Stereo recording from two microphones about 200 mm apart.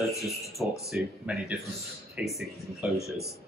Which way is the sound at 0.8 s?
5° right (ahead or behind).